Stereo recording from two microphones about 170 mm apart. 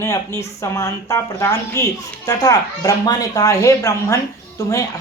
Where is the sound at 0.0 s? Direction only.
15° left (ahead or behind).